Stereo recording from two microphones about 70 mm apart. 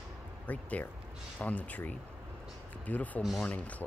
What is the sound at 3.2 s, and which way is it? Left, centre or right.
Speech, centre.